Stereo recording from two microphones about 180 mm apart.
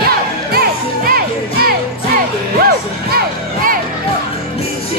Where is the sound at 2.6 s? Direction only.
60° right (ahead or behind).